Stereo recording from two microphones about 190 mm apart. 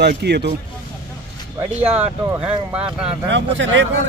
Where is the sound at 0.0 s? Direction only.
60° right (ahead or behind).